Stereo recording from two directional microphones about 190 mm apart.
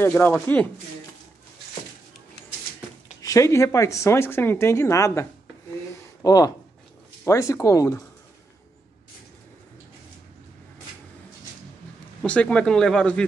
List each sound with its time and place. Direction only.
0.0 s speech: 10° left (ahead or behind)
3.2 s speech: 15° left (ahead or behind)
12.2 s speech: 5° left (ahead or behind)